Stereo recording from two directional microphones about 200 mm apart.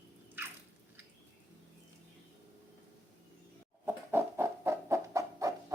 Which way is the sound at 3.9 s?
10° right (ahead or behind).